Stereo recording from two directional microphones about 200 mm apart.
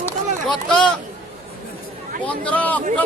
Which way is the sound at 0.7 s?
5° left (ahead or behind).